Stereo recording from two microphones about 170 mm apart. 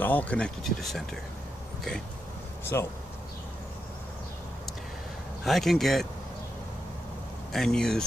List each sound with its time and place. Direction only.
0.0 s speech: 10° left (ahead or behind)
2.7 s speech: 15° left (ahead or behind)
5.4 s speech: centre (ahead or behind)
7.5 s speech: 5° left (ahead or behind)